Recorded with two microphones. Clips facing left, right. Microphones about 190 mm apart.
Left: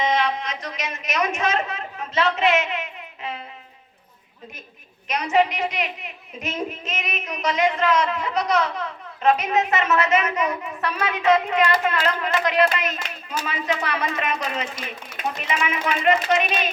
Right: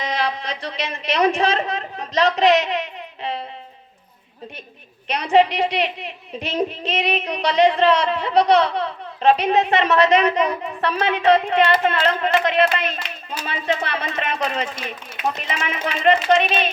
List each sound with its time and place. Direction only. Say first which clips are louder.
0.0 s a woman's voice: left 2 dB; 35° right (ahead or behind)
5.0 s a woman's voice: right 4 dB; 30° right (ahead or behind)